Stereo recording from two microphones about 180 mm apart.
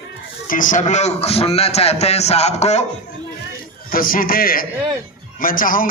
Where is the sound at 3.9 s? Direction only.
50° left (ahead or behind).